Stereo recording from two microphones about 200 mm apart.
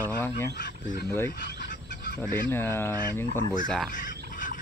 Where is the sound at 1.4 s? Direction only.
50° left (ahead or behind).